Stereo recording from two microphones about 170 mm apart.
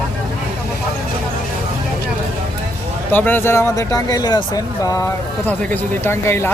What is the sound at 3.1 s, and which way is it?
Speech, 10° left (ahead or behind).